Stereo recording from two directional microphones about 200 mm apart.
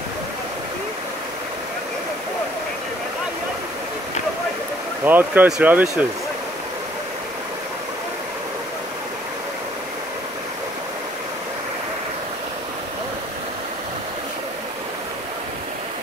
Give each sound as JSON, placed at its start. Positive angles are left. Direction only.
{"t": 5.0, "sound": "speech", "side_deg": -10}